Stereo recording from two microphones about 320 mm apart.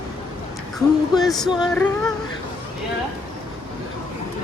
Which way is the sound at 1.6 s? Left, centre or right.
Centre.